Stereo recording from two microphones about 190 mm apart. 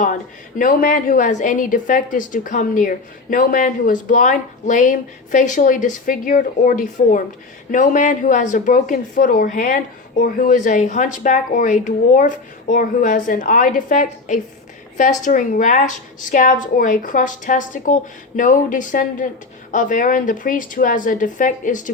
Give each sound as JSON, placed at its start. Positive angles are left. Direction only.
{"t": 0.6, "sound": "a woman's voice", "side_deg": 45}